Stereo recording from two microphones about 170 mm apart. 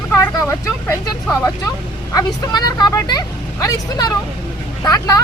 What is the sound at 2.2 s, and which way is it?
Speech, 25° left (ahead or behind).